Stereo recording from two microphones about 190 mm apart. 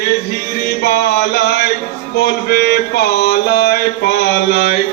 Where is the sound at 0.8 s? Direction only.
55° left (ahead or behind).